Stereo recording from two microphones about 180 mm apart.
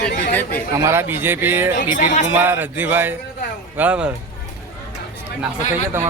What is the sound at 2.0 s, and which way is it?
Speech, 45° left (ahead or behind).